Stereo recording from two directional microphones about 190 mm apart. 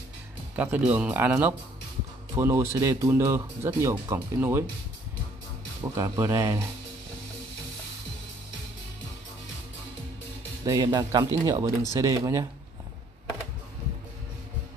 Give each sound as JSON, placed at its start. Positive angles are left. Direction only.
{"t": 0.6, "sound": "speech", "side_deg": -10}
{"t": 5.9, "sound": "speech", "side_deg": -15}
{"t": 10.6, "sound": "speech", "side_deg": -20}